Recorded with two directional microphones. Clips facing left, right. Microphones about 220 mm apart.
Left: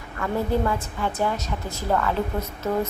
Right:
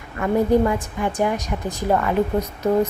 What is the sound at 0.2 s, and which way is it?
A woman's voice, 15° right (ahead or behind).